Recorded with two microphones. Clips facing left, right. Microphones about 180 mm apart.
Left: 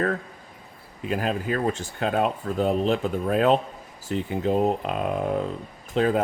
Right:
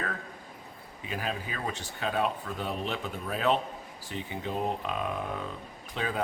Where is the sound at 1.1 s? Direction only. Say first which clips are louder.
Left 9 dB; 45° left (ahead or behind).